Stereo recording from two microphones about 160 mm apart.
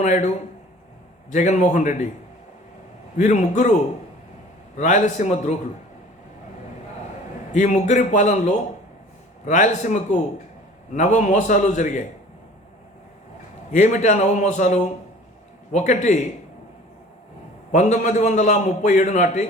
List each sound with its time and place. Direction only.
0.0 s a man's voice: 50° left (ahead or behind)
1.3 s a man's voice: 50° left (ahead or behind)
3.2 s a man's voice: 50° left (ahead or behind)
4.8 s a man's voice: 50° left (ahead or behind)
7.5 s a man's voice: 50° left (ahead or behind)
13.7 s a man's voice: 50° left (ahead or behind)
17.7 s a man's voice: 50° left (ahead or behind)